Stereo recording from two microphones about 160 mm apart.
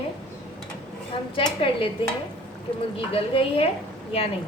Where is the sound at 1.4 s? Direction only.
35° left (ahead or behind).